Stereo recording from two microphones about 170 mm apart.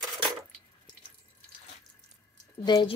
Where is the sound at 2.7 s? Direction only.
25° left (ahead or behind).